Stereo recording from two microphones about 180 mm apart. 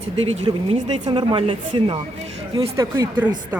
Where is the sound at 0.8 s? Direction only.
40° right (ahead or behind).